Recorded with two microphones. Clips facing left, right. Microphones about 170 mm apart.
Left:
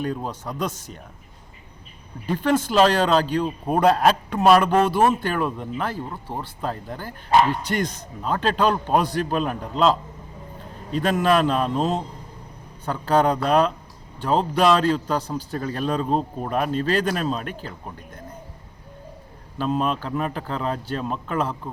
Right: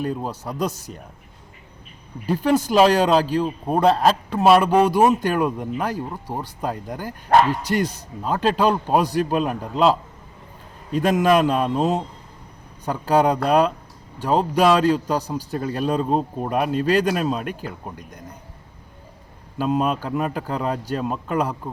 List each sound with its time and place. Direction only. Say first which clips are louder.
0.0 s speech: right 1 dB; 5° right (ahead or behind)
0.6 s speech: right 3 dB; 40° right (ahead or behind)
2.2 s speech: right 2 dB; 10° right (ahead or behind)
8.2 s speech: right 2 dB; 5° right (ahead or behind)
19.5 s speech: right 2 dB; 5° right (ahead or behind)